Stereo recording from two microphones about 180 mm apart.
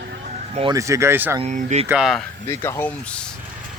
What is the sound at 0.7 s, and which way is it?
Speech, 15° right (ahead or behind).